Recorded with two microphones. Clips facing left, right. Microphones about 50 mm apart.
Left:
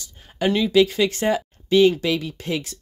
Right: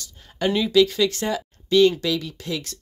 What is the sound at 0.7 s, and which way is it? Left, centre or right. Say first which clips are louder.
Speech: right 1 dB; centre.